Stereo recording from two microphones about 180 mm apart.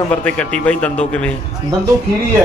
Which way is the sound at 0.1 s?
5° left (ahead or behind).